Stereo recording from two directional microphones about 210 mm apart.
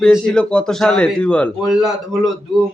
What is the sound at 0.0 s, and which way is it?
A man's voice, 5° left (ahead or behind).